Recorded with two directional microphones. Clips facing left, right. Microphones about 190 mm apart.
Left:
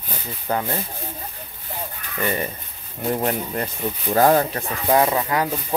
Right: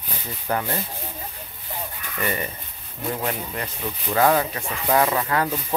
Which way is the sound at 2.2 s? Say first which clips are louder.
Left 3 dB; 30° left (ahead or behind).